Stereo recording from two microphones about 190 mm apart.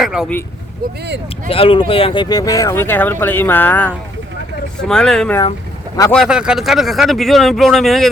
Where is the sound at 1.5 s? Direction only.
30° left (ahead or behind).